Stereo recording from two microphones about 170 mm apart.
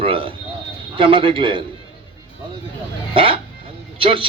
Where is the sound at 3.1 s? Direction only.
30° right (ahead or behind).